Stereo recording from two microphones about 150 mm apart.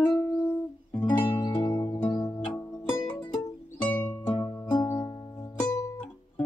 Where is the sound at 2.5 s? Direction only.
15° left (ahead or behind).